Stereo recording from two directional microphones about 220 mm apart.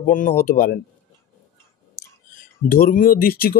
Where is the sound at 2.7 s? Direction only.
40° left (ahead or behind).